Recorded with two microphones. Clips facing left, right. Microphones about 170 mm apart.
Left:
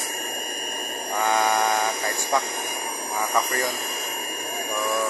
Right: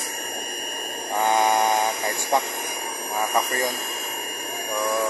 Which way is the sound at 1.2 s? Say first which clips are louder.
Right 2 dB; 25° right (ahead or behind).